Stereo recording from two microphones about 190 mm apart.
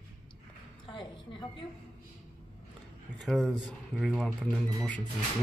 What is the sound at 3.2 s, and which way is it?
Speech, 5° left (ahead or behind).